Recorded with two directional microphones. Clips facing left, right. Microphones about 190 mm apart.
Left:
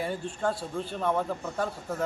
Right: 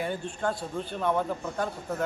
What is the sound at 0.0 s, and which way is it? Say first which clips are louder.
A man's voice: even; centre (ahead or behind).